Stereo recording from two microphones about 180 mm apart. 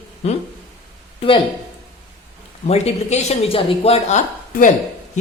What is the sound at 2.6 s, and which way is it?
A man's voice, 35° left (ahead or behind).